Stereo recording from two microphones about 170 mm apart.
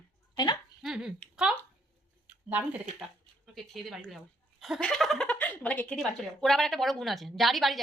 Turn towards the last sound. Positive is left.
turn(degrees=0)  # may be behind; listen again after turning